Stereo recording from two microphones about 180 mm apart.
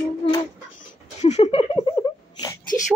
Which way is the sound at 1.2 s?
40° left (ahead or behind).